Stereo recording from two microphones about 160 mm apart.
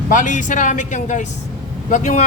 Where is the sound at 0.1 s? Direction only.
50° left (ahead or behind).